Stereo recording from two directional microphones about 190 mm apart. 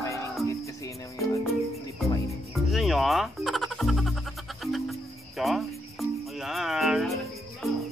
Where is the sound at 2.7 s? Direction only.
Centre (ahead or behind).